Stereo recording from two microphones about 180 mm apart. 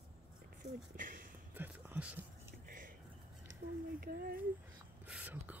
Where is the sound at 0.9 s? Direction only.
50° right (ahead or behind).